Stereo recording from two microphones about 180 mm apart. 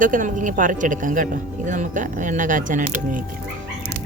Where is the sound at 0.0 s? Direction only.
45° right (ahead or behind).